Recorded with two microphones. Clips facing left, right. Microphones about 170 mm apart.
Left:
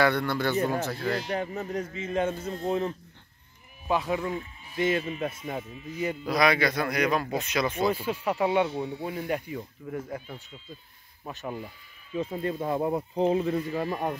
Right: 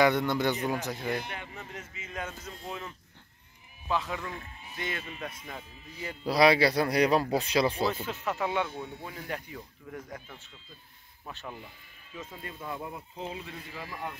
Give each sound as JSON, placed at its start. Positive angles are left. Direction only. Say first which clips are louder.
{"t": 0.0, "sound": "speech", "louder": "even", "side_deg": -15}
{"t": 1.3, "sound": "speech", "louder": "left 12 dB", "side_deg": 40}
{"t": 3.9, "sound": "speech", "louder": "left 5 dB", "side_deg": 15}
{"t": 6.2, "sound": "speech", "louder": "right 2 dB", "side_deg": -30}
{"t": 7.9, "sound": "speech", "louder": "left 5 dB", "side_deg": 10}
{"t": 8.6, "sound": "speech", "louder": "left 8 dB", "side_deg": 25}
{"t": 9.9, "sound": "speech", "louder": "left 7 dB", "side_deg": 5}
{"t": 11.2, "sound": "speech", "louder": "left 7 dB", "side_deg": 20}
{"t": 12.1, "sound": "speech", "louder": "left 13 dB", "side_deg": 35}